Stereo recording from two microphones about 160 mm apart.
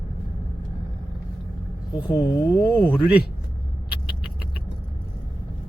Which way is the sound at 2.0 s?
25° left (ahead or behind).